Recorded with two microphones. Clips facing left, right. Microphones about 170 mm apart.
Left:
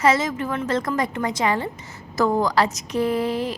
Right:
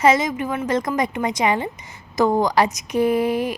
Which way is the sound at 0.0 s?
15° right (ahead or behind).